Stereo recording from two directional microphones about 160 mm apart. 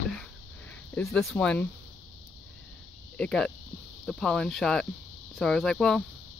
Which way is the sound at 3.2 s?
5° left (ahead or behind).